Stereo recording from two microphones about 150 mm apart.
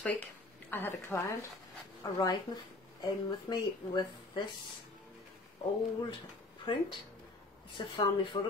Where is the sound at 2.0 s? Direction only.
25° left (ahead or behind).